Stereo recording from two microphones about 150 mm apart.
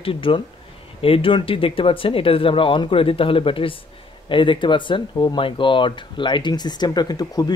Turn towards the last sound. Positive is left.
turn(degrees=25)  # may be behind; listen again after turning